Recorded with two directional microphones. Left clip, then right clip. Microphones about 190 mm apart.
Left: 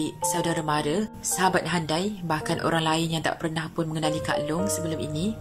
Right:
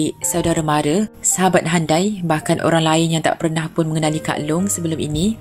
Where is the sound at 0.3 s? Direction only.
15° right (ahead or behind).